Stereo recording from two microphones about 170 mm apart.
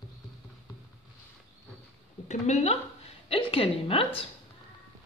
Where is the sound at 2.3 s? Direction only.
40° left (ahead or behind).